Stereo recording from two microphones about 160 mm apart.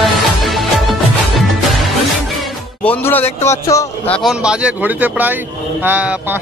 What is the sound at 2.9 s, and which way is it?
A man's voice, 10° left (ahead or behind).